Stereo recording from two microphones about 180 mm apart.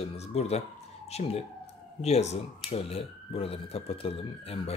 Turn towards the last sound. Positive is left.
turn(degrees=30)  # may be behind; listen again after turning